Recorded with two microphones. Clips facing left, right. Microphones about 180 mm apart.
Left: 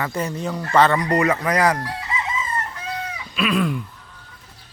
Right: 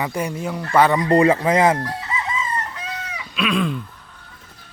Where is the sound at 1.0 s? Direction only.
30° right (ahead or behind).